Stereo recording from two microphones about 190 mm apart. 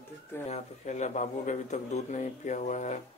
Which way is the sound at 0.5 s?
40° left (ahead or behind).